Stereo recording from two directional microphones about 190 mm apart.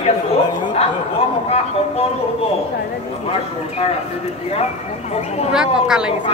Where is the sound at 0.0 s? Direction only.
30° left (ahead or behind).